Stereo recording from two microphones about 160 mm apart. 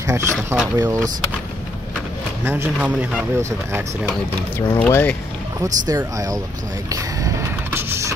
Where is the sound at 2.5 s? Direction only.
10° right (ahead or behind).